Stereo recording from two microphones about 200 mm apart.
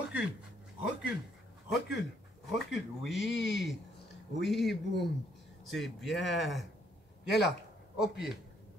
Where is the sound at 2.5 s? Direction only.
Centre (ahead or behind).